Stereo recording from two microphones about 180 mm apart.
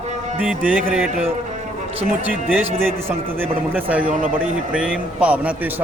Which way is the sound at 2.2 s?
10° right (ahead or behind).